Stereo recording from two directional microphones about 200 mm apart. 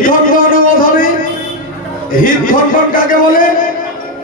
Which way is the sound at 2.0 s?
40° left (ahead or behind).